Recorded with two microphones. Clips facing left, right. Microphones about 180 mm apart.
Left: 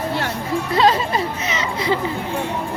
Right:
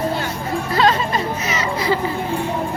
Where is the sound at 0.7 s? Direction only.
30° left (ahead or behind).